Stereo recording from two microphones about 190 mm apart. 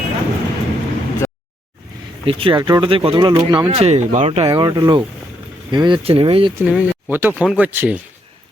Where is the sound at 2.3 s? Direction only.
30° right (ahead or behind).